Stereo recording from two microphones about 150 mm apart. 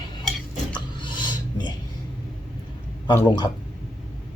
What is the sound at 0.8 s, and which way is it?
Filing, 30° left (ahead or behind).